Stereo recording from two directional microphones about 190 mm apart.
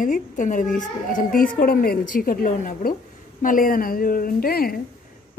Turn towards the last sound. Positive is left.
turn(degrees=50)  # may be behind; listen again after turning